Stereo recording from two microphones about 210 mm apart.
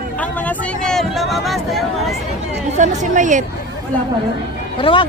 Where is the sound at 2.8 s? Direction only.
35° right (ahead or behind).